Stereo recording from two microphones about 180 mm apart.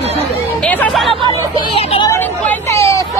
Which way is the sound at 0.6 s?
5° left (ahead or behind).